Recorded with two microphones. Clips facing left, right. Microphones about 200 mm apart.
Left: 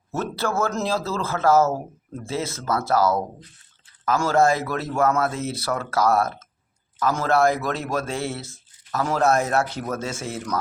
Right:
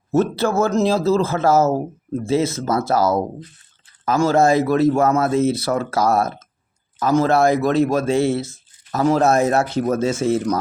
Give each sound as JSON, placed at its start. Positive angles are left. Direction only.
{"t": 0.1, "sound": "speech", "side_deg": -20}
{"t": 4.2, "sound": "speech", "side_deg": -20}